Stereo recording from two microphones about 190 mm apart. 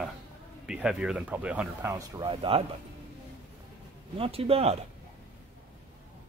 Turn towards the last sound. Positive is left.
turn(degrees=-30)  # may be behind; listen again after turning